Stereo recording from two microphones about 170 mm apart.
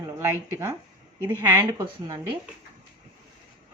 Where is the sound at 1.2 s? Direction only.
15° right (ahead or behind).